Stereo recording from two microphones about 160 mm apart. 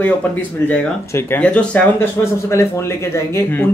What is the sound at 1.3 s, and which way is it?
Speech, 10° left (ahead or behind).